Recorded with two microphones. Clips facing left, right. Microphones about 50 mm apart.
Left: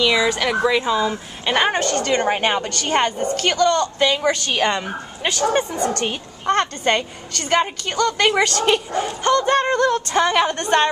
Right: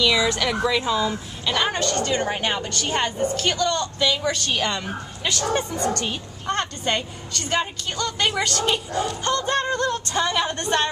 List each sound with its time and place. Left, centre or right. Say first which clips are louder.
0.0 s speech: left 3 dB; centre
1.4 s speech: left 4 dB; left
2.0 s a woman's voice: left 4 dB; left
4.7 s speech: left 4 dB; centre
5.9 s a woman's voice: left 4 dB; left
9.0 s speech: left 6 dB; left